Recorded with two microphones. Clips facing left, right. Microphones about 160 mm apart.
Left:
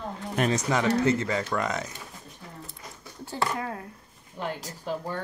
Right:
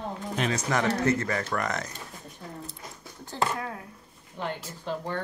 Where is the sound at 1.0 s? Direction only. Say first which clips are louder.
Left 1 dB; 20° left (ahead or behind).